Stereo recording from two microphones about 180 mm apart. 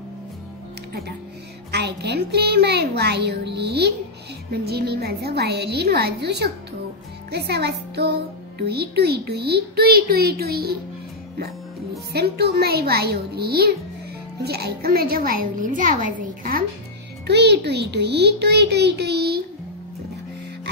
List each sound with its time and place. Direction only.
1.7 s speech: 70° right (ahead or behind)
12.1 s speech: 65° right (ahead or behind)
17.3 s a child's voice: 70° right (ahead or behind)